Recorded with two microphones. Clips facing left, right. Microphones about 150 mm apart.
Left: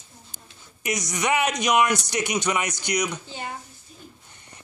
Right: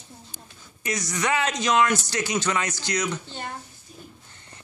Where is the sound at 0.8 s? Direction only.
20° left (ahead or behind).